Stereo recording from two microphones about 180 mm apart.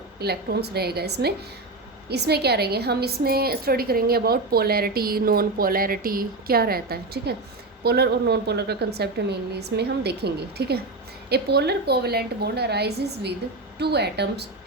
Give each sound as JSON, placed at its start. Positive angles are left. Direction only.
{"t": 0.2, "sound": "a woman's voice", "side_deg": -65}